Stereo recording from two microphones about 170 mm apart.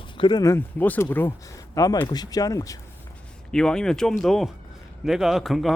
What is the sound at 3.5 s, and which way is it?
Speech, 5° left (ahead or behind).